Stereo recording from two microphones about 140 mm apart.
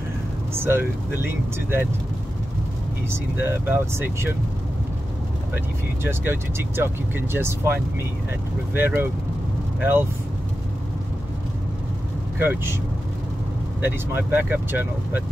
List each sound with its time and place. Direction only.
0.6 s speech: 15° right (ahead or behind)
3.1 s speech: 15° right (ahead or behind)
6.0 s speech: 15° right (ahead or behind)
12.4 s speech: 15° right (ahead or behind)
13.7 s speech: 15° right (ahead or behind)